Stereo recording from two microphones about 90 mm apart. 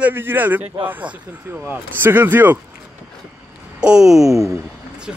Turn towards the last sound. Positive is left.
turn(degrees=-5)  # may be behind; listen again after turning